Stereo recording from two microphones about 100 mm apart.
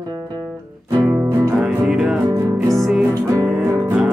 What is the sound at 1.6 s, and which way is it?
Music, 5° right (ahead or behind).